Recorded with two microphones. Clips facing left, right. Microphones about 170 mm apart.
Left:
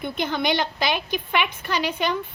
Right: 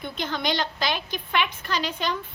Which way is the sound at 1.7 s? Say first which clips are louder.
Left 3 dB; 60° left (ahead or behind).